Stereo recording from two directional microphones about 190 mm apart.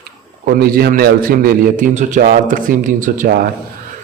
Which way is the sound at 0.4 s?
50° right (ahead or behind).